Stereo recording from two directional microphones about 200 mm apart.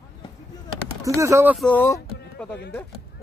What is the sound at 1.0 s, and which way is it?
Speech, 15° right (ahead or behind).